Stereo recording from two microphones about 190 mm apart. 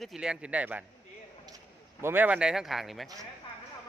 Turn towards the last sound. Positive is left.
turn(degrees=0)  # may be behind; listen again after turning